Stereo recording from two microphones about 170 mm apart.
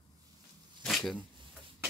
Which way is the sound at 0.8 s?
Centre (ahead or behind).